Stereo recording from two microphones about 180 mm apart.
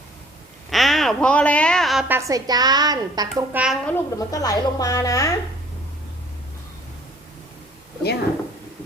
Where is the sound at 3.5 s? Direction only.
5° right (ahead or behind).